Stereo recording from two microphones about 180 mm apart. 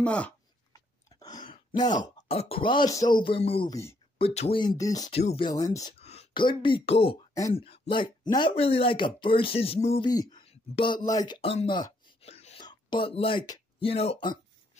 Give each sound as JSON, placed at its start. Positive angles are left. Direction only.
{"t": 0.0, "sound": "speech", "side_deg": 5}
{"t": 0.7, "sound": "a sound", "side_deg": 20}
{"t": 2.2, "sound": "speech", "side_deg": 30}
{"t": 5.1, "sound": "speech", "side_deg": 35}
{"t": 5.5, "sound": "speech", "side_deg": 20}
{"t": 5.9, "sound": "speech", "side_deg": 35}
{"t": 11.4, "sound": "a sound", "side_deg": 30}
{"t": 12.6, "sound": "speech", "side_deg": 25}